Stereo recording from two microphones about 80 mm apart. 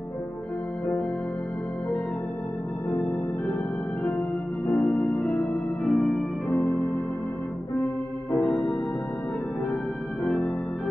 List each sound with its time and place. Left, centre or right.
4.6 s music: centre
6.5 s organ: left
10.2 s organ: centre